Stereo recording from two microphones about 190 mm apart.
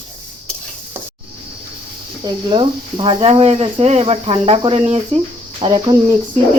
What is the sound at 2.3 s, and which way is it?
Speech, 25° right (ahead or behind).